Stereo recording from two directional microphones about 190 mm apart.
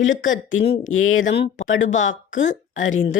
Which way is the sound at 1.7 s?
90° left.